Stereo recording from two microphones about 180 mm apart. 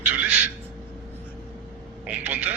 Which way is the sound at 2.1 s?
10° right (ahead or behind).